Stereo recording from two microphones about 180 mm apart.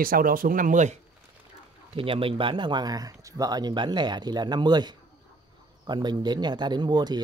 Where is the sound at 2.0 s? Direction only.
30° right (ahead or behind).